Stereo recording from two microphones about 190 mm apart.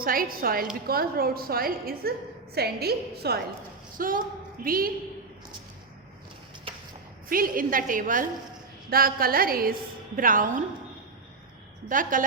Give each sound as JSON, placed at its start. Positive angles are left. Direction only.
{"t": 0.0, "sound": "a woman's voice", "side_deg": -50}
{"t": 6.7, "sound": "a sound", "side_deg": -30}
{"t": 7.3, "sound": "a woman's voice", "side_deg": -50}
{"t": 11.9, "sound": "a woman's voice", "side_deg": -45}